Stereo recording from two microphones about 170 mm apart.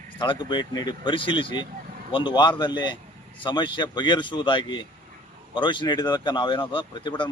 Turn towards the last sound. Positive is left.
turn(degrees=25)  # may be behind; listen again after turning